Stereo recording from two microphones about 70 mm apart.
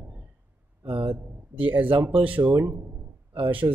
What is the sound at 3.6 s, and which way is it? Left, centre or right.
Speech, right.